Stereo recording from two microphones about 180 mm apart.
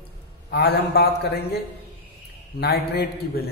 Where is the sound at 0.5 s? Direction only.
65° left (ahead or behind).